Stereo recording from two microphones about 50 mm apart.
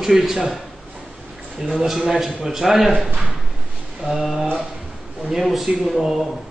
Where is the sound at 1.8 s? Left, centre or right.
Centre.